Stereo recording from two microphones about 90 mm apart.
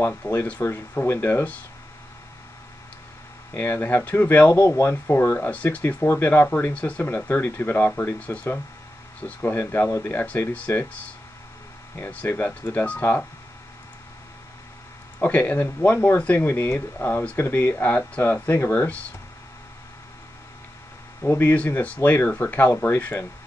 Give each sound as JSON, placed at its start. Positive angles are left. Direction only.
{"t": 0.1, "sound": "speech", "side_deg": 20}
{"t": 3.5, "sound": "speech", "side_deg": 25}
{"t": 4.5, "sound": "speech", "side_deg": 30}
{"t": 12.0, "sound": "speech", "side_deg": 15}
{"t": 15.1, "sound": "speech", "side_deg": 20}
{"t": 21.2, "sound": "speech", "side_deg": 25}